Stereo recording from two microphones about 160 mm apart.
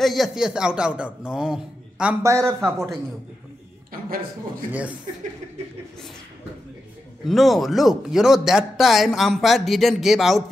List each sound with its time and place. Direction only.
0.0 s speech: centre (ahead or behind)
2.2 s speech: 20° right (ahead or behind)
7.2 s speech: centre (ahead or behind)